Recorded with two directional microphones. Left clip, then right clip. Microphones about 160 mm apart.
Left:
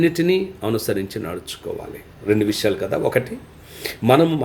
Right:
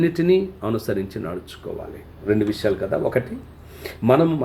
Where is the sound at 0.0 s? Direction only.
50° left (ahead or behind).